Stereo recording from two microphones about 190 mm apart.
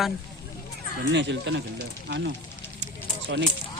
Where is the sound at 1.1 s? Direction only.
70° right (ahead or behind).